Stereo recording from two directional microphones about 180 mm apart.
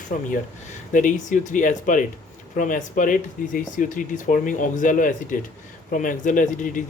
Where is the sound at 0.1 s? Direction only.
50° left (ahead or behind).